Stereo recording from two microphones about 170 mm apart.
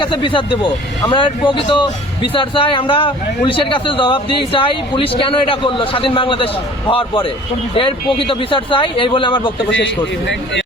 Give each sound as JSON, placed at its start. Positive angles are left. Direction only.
{"t": 0.0, "sound": "speech", "side_deg": 30}
{"t": 9.8, "sound": "a man's voice", "side_deg": 90}